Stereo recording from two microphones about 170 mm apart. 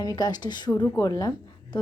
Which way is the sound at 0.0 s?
25° left (ahead or behind).